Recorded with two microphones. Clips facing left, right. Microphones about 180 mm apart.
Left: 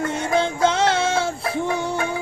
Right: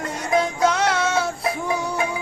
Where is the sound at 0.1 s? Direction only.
25° left (ahead or behind).